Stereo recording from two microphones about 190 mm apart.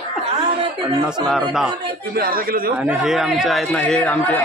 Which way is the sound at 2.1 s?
50° right (ahead or behind).